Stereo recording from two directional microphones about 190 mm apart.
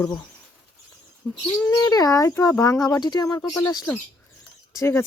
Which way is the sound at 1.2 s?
5° left (ahead or behind).